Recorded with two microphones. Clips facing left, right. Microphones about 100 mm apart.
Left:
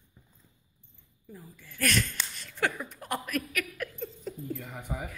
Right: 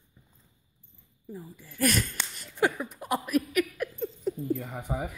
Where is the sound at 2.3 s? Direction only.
15° right (ahead or behind).